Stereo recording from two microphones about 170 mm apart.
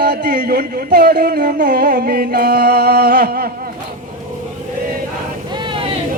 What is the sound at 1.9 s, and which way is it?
Music, 60° right (ahead or behind).